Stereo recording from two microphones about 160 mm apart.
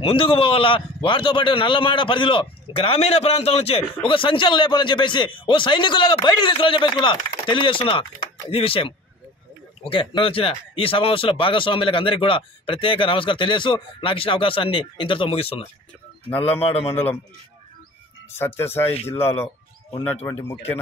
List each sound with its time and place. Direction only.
0.0 s a man's voice: 35° left (ahead or behind)
16.3 s speech: 10° left (ahead or behind)
18.3 s speech: 15° left (ahead or behind)
20.2 s speech: 15° left (ahead or behind)